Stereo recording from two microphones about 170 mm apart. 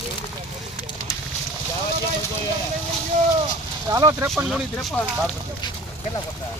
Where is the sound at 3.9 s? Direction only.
15° right (ahead or behind).